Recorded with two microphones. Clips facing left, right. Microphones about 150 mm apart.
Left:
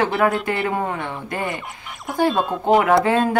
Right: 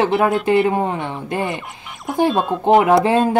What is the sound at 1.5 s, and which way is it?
Quack, centre (ahead or behind).